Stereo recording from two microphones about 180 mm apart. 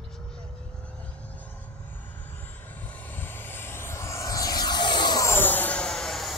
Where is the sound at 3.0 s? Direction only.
10° left (ahead or behind).